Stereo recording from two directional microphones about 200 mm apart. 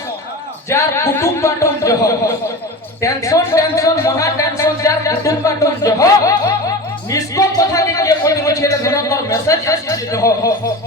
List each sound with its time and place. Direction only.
0.7 s speech: 15° left (ahead or behind)